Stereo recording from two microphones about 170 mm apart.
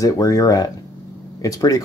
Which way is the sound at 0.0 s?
20° left (ahead or behind).